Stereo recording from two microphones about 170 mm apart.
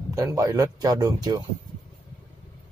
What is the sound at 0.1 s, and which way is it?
Speech, 20° right (ahead or behind).